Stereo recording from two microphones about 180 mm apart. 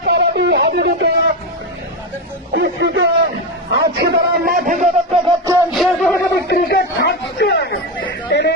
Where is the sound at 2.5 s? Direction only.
70° right (ahead or behind).